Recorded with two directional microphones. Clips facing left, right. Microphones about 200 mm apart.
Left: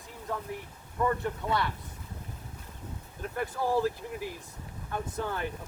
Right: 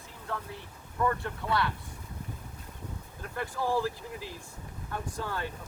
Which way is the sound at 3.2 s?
20° left (ahead or behind).